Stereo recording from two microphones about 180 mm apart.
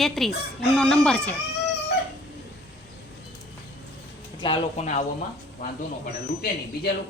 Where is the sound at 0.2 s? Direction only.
Centre (ahead or behind).